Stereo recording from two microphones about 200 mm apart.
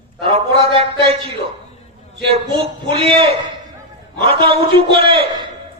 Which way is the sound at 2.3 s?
30° right (ahead or behind).